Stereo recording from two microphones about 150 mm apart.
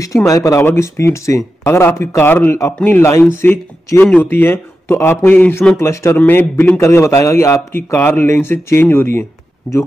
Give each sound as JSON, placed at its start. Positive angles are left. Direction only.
{"t": 0.0, "sound": "speech", "side_deg": 20}